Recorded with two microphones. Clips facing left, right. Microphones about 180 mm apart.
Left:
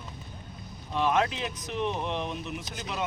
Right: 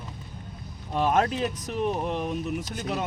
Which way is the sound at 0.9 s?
40° right (ahead or behind).